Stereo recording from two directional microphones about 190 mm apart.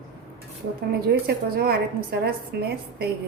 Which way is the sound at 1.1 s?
55° right (ahead or behind).